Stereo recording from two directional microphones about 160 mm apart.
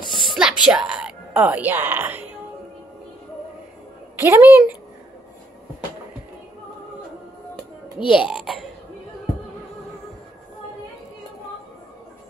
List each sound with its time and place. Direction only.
0.0 s a sound: 30° left (ahead or behind)
0.4 s speech: 5° right (ahead or behind)
4.2 s a woman's voice: 15° right (ahead or behind)
8.1 s speech: 5° right (ahead or behind)